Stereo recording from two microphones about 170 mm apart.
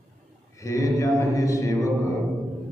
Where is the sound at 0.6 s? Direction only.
20° left (ahead or behind).